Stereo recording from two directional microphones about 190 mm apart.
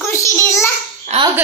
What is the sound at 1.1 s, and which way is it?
Speech, 35° right (ahead or behind).